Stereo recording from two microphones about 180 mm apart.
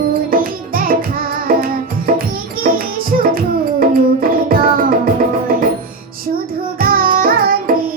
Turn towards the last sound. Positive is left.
turn(degrees=-55)  # may be behind; listen again after turning